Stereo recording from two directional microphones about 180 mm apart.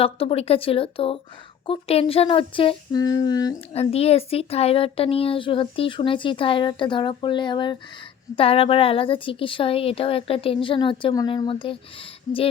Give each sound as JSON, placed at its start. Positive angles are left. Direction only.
{"t": 0.0, "sound": "speech", "side_deg": 30}
{"t": 3.7, "sound": "speech", "side_deg": 35}